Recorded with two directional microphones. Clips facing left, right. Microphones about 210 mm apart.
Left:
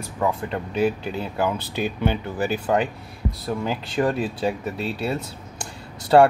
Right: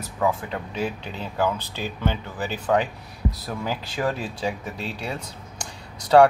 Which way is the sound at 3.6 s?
Centre (ahead or behind).